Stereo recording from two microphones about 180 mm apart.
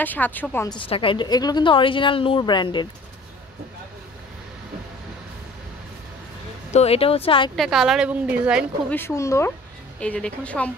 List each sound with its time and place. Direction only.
0.0 s a woman's voice: 10° left (ahead or behind)
0.7 s a woman's voice: 30° left (ahead or behind)
6.7 s speech: 35° left (ahead or behind)
7.5 s a woman's voice: centre (ahead or behind)
8.9 s a woman's voice: 15° left (ahead or behind)
9.9 s a woman's voice: 5° left (ahead or behind)